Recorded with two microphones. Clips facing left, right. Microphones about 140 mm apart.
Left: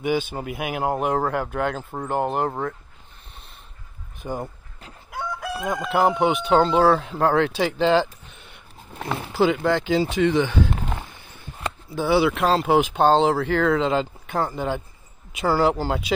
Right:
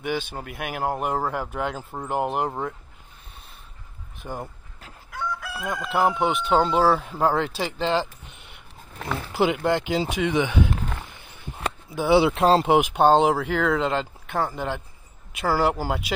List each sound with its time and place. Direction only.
0.0 s speech: 5° left (ahead or behind)
4.2 s speech: centre (ahead or behind)
5.1 s chicken: 15° left (ahead or behind)
5.7 s speech: centre (ahead or behind)
9.3 s speech: 15° right (ahead or behind)
11.5 s speech: 15° right (ahead or behind); by 12.6 s 30° right (ahead or behind)
12.6 s speech: 15° right (ahead or behind)